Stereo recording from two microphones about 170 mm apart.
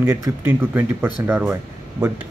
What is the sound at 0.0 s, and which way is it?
Speech, 15° right (ahead or behind).